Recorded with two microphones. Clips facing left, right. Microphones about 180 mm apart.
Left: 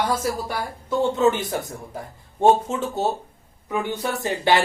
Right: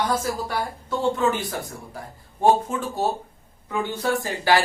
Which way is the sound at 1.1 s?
20° left (ahead or behind).